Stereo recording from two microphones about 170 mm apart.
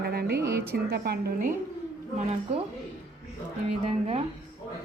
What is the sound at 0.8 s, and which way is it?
Speech, 70° right (ahead or behind).